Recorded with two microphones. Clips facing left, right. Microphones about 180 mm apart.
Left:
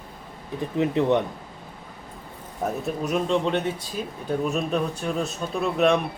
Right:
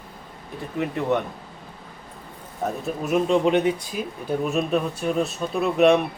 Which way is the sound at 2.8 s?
5° right (ahead or behind).